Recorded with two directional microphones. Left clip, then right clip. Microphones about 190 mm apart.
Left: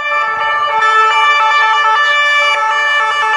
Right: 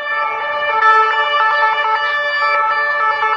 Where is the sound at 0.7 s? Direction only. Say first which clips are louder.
Even; 25° left (ahead or behind).